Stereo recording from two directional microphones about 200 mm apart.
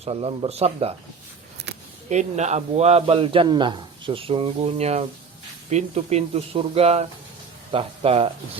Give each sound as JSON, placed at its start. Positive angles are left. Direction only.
{"t": 0.0, "sound": "a man's voice", "side_deg": -30}
{"t": 1.6, "sound": "a sound", "side_deg": -55}
{"t": 2.0, "sound": "a man's voice", "side_deg": -35}